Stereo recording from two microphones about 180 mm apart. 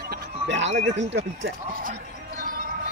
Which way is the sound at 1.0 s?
85° right.